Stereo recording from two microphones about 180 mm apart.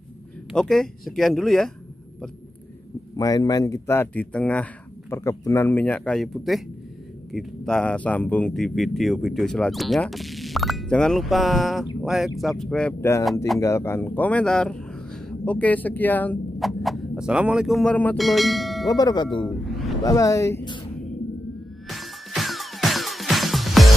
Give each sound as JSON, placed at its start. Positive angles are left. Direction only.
{"t": 0.5, "sound": "speech", "side_deg": 0}
{"t": 3.2, "sound": "speech", "side_deg": 20}
{"t": 18.9, "sound": "speech", "side_deg": 20}
{"t": 19.4, "sound": "a sound", "side_deg": 0}
{"t": 20.0, "sound": "speech", "side_deg": 20}
{"t": 21.8, "sound": "music", "side_deg": 0}